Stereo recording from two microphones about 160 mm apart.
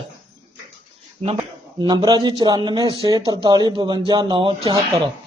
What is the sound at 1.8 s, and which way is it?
Speech, 25° right (ahead or behind).